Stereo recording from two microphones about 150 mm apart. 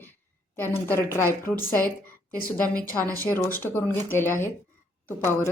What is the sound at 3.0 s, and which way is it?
Speech, 20° right (ahead or behind).